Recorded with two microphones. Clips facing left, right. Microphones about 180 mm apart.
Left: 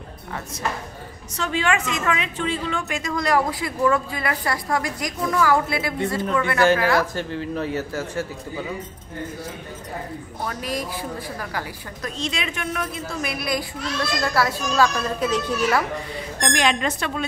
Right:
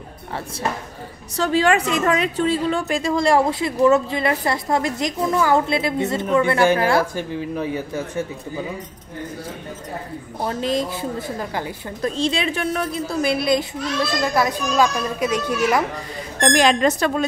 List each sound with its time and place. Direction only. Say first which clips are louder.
1.3 s a woman's voice: right 6 dB; 35° right (ahead or behind)
6.6 s a child's voice: right 2 dB; 15° right (ahead or behind)
10.4 s a woman's voice: right 6 dB; 25° right (ahead or behind)
16.5 s a woman's voice: right 6 dB; 40° right (ahead or behind)